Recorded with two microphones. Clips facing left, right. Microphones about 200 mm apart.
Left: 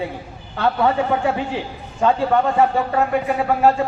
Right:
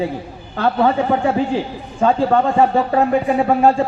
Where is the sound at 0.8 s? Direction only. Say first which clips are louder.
Right 3 dB; 35° right (ahead or behind).